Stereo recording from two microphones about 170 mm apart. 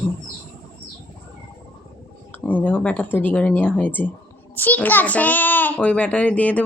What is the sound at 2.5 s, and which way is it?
A child's voice, 10° left (ahead or behind).